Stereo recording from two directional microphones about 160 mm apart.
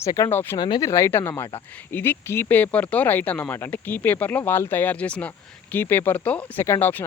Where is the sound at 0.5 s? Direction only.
25° left (ahead or behind).